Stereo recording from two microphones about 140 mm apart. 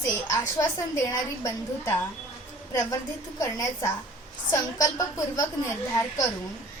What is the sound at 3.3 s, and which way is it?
A woman's voice, 20° left (ahead or behind).